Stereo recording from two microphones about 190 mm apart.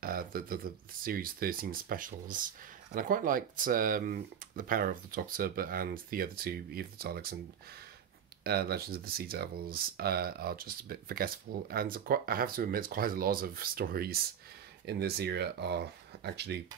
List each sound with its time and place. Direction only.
0.0 s a sound: 50° right (ahead or behind)
1.0 s speech: 50° right (ahead or behind)
8.5 s speech: 55° right (ahead or behind)